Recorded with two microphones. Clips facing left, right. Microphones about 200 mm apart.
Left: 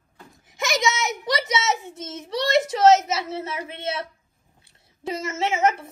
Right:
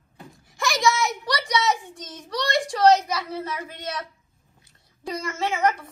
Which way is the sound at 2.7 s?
20° left (ahead or behind).